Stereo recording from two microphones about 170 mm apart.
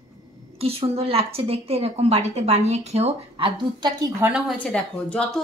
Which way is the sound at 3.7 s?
25° right (ahead or behind).